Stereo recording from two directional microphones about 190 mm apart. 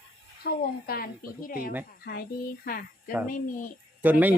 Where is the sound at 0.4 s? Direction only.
50° left (ahead or behind).